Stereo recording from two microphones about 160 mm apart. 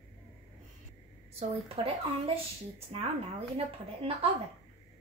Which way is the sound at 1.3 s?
40° right (ahead or behind).